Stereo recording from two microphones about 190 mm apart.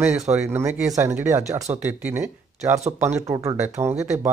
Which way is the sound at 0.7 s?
40° right (ahead or behind).